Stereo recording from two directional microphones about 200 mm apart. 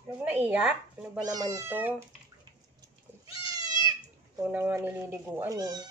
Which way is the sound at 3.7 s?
20° right (ahead or behind).